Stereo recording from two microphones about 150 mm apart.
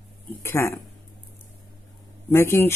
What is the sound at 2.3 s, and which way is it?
Speech, 15° left (ahead or behind).